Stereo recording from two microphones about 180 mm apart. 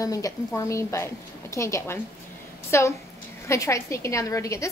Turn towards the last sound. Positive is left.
turn(degrees=15)  # may be behind; listen again after turning